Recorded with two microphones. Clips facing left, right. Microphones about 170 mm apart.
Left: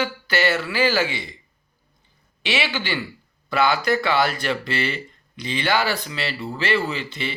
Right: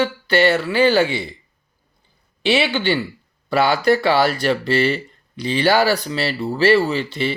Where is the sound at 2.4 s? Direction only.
30° right (ahead or behind).